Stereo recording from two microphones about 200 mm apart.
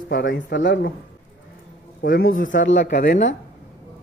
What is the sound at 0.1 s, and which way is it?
Speech, 55° left (ahead or behind).